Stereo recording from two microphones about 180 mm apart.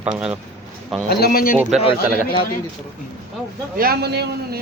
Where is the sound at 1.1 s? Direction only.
60° left (ahead or behind).